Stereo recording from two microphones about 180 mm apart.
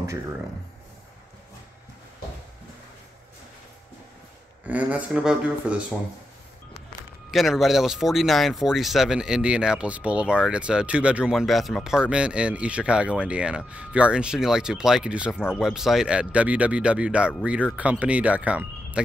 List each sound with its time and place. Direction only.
4.6 s speech: 10° right (ahead or behind)
7.2 s speech: centre (ahead or behind)